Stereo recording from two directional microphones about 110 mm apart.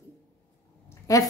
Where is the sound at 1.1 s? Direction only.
30° left (ahead or behind).